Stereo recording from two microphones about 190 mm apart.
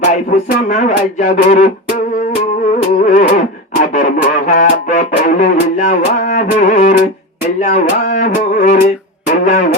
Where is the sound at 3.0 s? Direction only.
40° left (ahead or behind).